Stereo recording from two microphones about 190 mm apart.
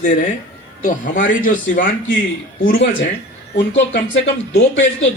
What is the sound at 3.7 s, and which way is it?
Speech, 75° left (ahead or behind).